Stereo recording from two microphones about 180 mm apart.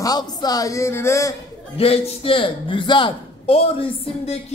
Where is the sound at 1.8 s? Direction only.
30° left (ahead or behind).